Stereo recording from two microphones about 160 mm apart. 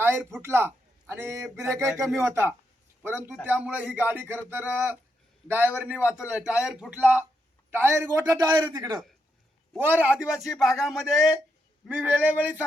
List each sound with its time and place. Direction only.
0.0 s a man's voice: 15° right (ahead or behind)
9.7 s a man's voice: 10° right (ahead or behind)